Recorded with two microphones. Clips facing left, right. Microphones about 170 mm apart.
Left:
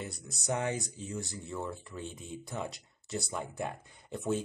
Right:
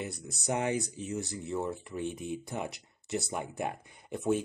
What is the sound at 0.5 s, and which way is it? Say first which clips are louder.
Speech: right 2 dB; 15° right (ahead or behind).